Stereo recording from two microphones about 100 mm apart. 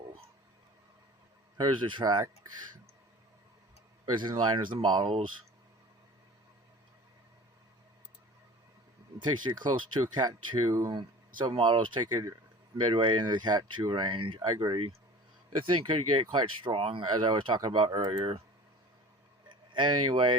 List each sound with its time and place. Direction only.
1.5 s speech: 50° right (ahead or behind)
4.2 s speech: 50° right (ahead or behind)
9.1 s speech: 50° right (ahead or behind)
10.9 s speech: 50° right (ahead or behind)
14.3 s speech: 45° right (ahead or behind)
16.3 s speech: 50° right (ahead or behind)
19.7 s speech: 50° right (ahead or behind)